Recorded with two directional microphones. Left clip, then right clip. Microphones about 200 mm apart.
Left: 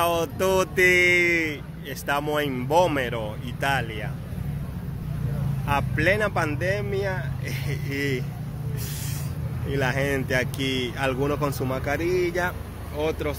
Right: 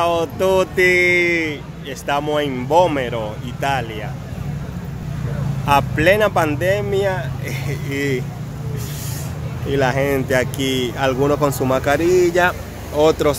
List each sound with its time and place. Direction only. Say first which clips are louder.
0.0 s speech: right 6 dB; 5° right (ahead or behind)
5.7 s speech: right 9 dB; 20° right (ahead or behind)
9.7 s speech: right 8 dB; 15° right (ahead or behind); by 13.4 s 30° right (ahead or behind)